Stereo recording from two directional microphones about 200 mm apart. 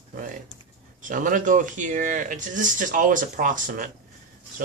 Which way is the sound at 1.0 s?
40° right (ahead or behind).